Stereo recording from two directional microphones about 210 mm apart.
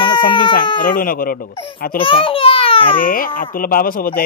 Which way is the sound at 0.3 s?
20° left (ahead or behind).